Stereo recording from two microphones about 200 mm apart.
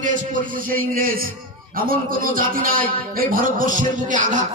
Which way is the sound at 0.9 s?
45° right (ahead or behind).